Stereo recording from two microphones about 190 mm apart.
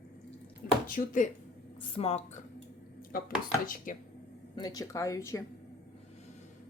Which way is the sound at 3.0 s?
50° left (ahead or behind).